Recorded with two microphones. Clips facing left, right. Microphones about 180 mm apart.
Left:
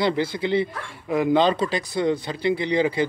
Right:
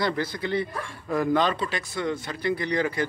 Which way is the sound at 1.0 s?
15° left (ahead or behind).